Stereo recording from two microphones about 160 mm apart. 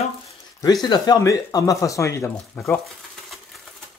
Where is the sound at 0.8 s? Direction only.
20° left (ahead or behind).